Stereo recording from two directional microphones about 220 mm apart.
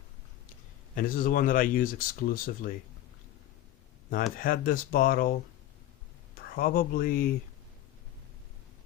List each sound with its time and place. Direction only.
0.9 s speech: 40° left (ahead or behind)
4.1 s speech: 40° left (ahead or behind)
6.6 s speech: 40° left (ahead or behind)